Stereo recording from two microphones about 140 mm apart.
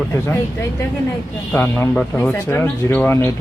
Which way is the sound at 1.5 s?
15° left (ahead or behind).